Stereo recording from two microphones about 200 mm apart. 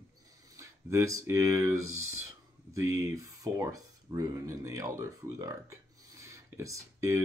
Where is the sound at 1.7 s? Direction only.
90° right.